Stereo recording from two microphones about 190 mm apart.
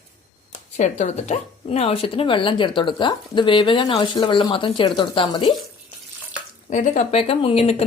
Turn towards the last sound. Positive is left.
turn(degrees=35)  # may be behind; listen again after turning